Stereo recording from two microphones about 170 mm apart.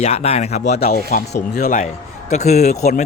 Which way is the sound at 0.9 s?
65° left (ahead or behind).